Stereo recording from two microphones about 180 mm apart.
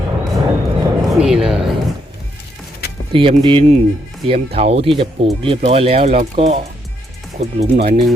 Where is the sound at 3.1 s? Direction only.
30° right (ahead or behind).